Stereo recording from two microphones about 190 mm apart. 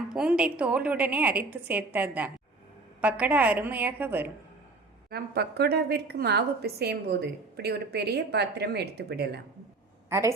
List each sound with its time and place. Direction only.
0.1 s a woman's voice: 5° right (ahead or behind)
5.1 s a woman's voice: 55° right (ahead or behind)
10.1 s a woman's voice: 15° right (ahead or behind)